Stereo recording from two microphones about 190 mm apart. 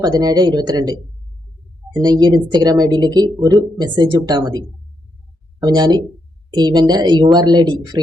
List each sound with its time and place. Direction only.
0.0 s speech: 20° right (ahead or behind)